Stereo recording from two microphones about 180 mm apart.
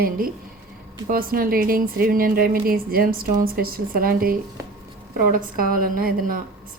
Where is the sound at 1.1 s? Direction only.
55° right (ahead or behind).